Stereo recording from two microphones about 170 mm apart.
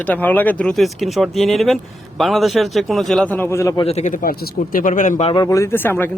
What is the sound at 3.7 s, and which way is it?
Speech, 35° left (ahead or behind).